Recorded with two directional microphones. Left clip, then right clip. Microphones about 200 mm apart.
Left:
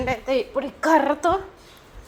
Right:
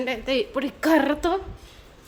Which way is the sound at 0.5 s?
45° right (ahead or behind).